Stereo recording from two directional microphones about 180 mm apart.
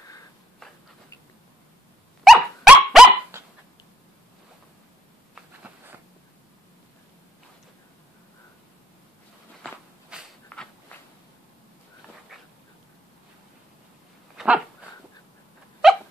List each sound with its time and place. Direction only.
2.2 s dog: centre (ahead or behind)
5.3 s insect: 10° right (ahead or behind)
10.5 s a sound: 5° left (ahead or behind)
14.3 s dog: 5° right (ahead or behind)
15.8 s dog: centre (ahead or behind)